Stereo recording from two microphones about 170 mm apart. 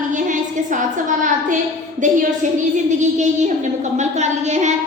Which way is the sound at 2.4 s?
45° right (ahead or behind).